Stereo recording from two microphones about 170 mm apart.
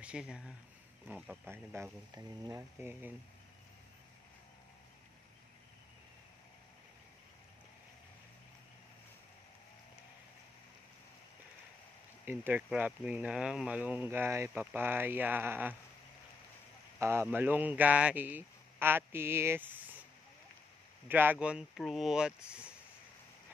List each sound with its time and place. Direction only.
0.0 s speech: 5° right (ahead or behind)
12.3 s speech: 10° right (ahead or behind)
17.0 s speech: 15° right (ahead or behind)
21.1 s speech: 10° right (ahead or behind)